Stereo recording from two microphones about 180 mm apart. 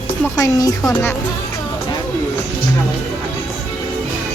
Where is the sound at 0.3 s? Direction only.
20° left (ahead or behind).